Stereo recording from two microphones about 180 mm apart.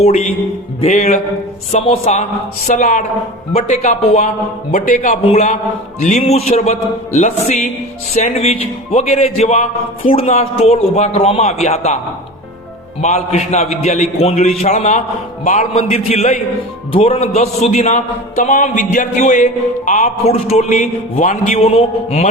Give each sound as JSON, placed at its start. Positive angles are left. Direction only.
{"t": 0.0, "sound": "speech", "side_deg": 40}
{"t": 13.0, "sound": "speech", "side_deg": 40}